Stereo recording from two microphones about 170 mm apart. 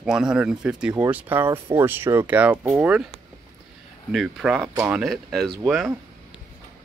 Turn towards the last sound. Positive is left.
turn(degrees=0)  # may be behind; listen again after turning